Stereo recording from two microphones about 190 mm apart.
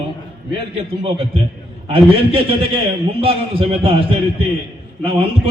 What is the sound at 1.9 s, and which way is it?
A man's voice, 30° right (ahead or behind).